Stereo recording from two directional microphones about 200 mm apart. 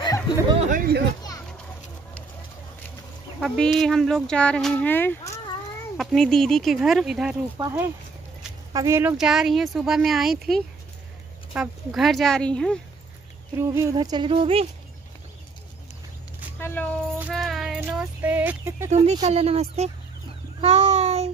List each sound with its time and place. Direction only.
0.0 s a sound: 20° left (ahead or behind)
0.7 s speech: 45° right (ahead or behind)
3.3 s speech: centre (ahead or behind)
5.9 s speech: centre (ahead or behind)
7.5 s speech: 15° right (ahead or behind)
9.1 s speech: centre (ahead or behind)
13.6 s speech: 15° right (ahead or behind)
16.5 s a sound: 10° left (ahead or behind)
17.2 s music: centre (ahead or behind)
17.7 s speech: 10° right (ahead or behind)
18.9 s speech: 35° right (ahead or behind)
20.6 s child singing: 30° right (ahead or behind)